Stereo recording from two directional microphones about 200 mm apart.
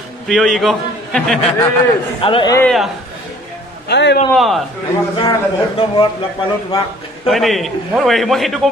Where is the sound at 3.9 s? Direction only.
55° left (ahead or behind).